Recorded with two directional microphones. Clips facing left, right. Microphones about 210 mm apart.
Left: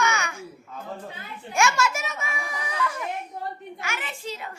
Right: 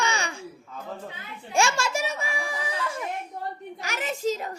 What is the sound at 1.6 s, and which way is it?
A child's voice, 30° right (ahead or behind).